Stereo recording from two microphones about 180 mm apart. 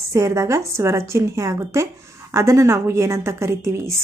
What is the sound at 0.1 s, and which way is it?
A woman's voice, 15° right (ahead or behind).